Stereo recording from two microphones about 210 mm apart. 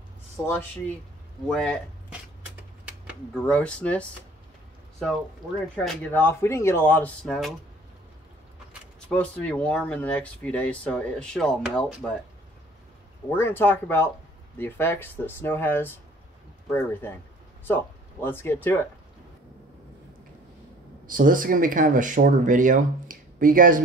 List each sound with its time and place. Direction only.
0.4 s speech: 10° left (ahead or behind)
3.3 s speech: 5° left (ahead or behind)
5.8 s speech: 10° left (ahead or behind)
9.1 s speech: 5° left (ahead or behind)
13.3 s speech: 10° left (ahead or behind)
21.1 s speech: 40° right (ahead or behind)